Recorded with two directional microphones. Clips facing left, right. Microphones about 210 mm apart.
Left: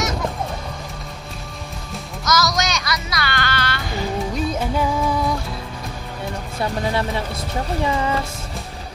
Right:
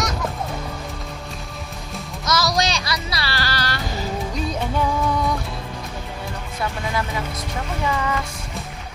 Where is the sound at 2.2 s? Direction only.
30° right (ahead or behind).